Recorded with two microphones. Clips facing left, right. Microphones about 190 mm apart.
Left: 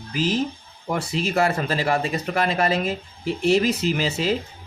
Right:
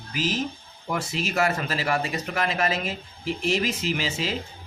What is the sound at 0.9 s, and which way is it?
Speech, 30° left (ahead or behind).